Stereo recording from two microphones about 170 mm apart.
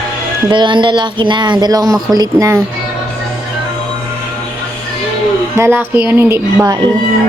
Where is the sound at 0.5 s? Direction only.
30° right (ahead or behind).